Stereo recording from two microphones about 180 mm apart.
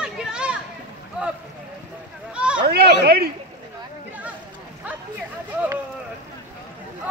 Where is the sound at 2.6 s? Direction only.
65° right (ahead or behind).